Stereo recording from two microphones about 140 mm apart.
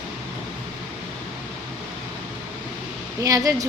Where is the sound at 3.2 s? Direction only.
25° right (ahead or behind).